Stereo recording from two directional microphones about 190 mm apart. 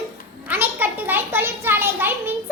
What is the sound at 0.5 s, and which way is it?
A child's voice, 10° right (ahead or behind).